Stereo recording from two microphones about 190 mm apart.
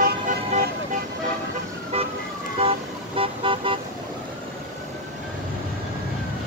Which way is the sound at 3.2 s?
25° right (ahead or behind).